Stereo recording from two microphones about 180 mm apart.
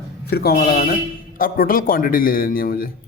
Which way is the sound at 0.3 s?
60° left (ahead or behind).